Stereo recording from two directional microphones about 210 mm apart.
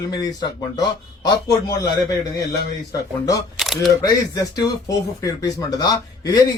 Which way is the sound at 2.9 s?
15° left (ahead or behind).